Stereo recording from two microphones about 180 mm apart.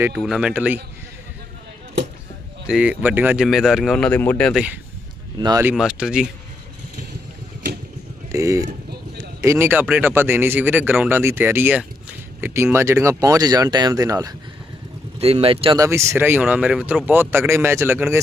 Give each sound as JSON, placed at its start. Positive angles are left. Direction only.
{"t": 0.1, "sound": "speech", "side_deg": 0}
{"t": 2.6, "sound": "speech", "side_deg": -5}
{"t": 5.4, "sound": "speech", "side_deg": -20}
{"t": 5.6, "sound": "speech", "side_deg": -5}
{"t": 8.3, "sound": "speech", "side_deg": -15}
{"t": 15.2, "sound": "speech", "side_deg": -35}
{"t": 15.8, "sound": "speech", "side_deg": -15}